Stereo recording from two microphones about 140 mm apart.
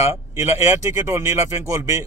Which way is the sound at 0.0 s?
20° right (ahead or behind).